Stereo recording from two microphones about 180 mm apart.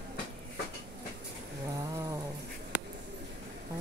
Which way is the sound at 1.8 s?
20° right (ahead or behind).